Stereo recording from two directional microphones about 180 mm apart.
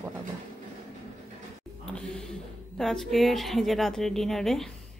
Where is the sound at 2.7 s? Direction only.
Centre (ahead or behind).